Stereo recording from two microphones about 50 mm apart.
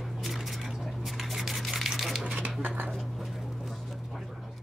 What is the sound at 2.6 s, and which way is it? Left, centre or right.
Dishes, right.